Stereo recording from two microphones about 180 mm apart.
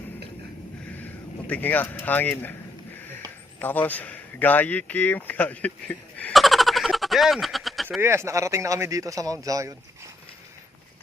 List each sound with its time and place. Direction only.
1.5 s speech: 10° left (ahead or behind)
3.6 s speech: 10° left (ahead or behind)
7.9 s speech: 10° right (ahead or behind)